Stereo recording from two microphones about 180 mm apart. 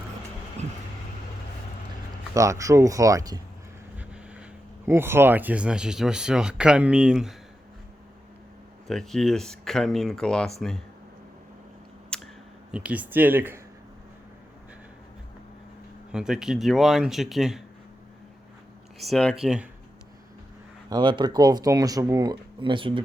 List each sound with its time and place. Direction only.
2.3 s speech: 15° right (ahead or behind)
3.9 s vehicle: 5° right (ahead or behind)
4.9 s speech: 15° right (ahead or behind)
8.9 s speech: centre (ahead or behind)
12.1 s a sound: 5° left (ahead or behind)
12.7 s speech: 5° right (ahead or behind)
16.1 s speech: 5° right (ahead or behind)
18.9 s speech: centre (ahead or behind)
20.9 s speech: 25° right (ahead or behind)